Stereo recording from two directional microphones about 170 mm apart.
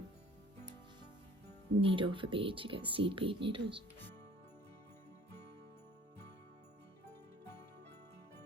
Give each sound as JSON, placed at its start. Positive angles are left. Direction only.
{"t": 1.8, "sound": "a woman's voice", "side_deg": -30}